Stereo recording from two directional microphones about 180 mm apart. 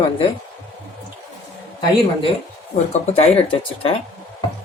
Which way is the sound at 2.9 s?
35° left (ahead or behind).